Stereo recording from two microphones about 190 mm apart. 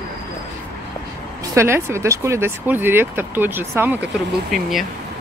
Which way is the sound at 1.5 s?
15° right (ahead or behind).